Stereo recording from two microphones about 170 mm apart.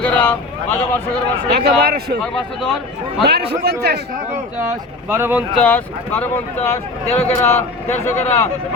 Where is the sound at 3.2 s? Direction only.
70° right (ahead or behind).